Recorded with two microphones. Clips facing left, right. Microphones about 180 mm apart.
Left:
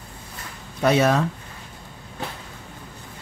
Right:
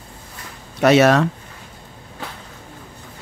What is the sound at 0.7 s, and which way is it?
Speech, 75° right (ahead or behind).